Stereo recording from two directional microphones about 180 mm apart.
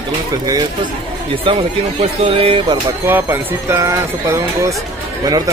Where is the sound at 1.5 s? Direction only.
35° right (ahead or behind).